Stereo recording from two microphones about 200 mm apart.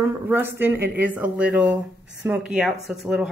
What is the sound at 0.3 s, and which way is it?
Speech, 10° right (ahead or behind).